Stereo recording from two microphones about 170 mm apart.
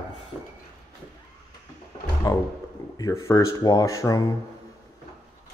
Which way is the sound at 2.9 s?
20° left (ahead or behind).